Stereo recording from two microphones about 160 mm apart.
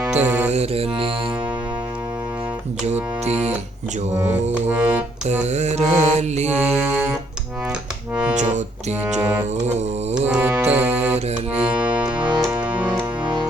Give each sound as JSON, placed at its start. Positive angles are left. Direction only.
{"t": 0.0, "sound": "music", "side_deg": -10}
{"t": 0.5, "sound": "music", "side_deg": -40}
{"t": 4.7, "sound": "music", "side_deg": -10}
{"t": 5.2, "sound": "mantra", "side_deg": -45}
{"t": 6.6, "sound": "music", "side_deg": -5}
{"t": 8.1, "sound": "music", "side_deg": -5}
{"t": 8.4, "sound": "mantra", "side_deg": -45}
{"t": 10.2, "sound": "music", "side_deg": -5}